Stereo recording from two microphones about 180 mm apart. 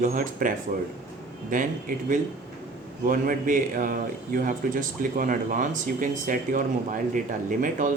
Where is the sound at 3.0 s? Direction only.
50° right (ahead or behind).